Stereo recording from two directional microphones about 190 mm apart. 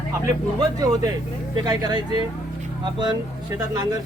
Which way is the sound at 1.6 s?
20° right (ahead or behind).